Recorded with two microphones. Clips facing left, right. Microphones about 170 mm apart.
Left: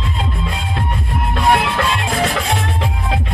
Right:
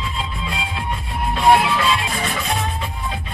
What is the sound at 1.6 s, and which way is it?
Music, 60° left (ahead or behind).